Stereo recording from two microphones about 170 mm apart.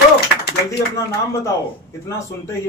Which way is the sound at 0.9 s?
20° left (ahead or behind).